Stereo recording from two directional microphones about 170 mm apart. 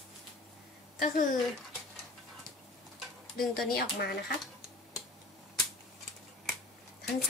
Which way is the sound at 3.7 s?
65° left (ahead or behind).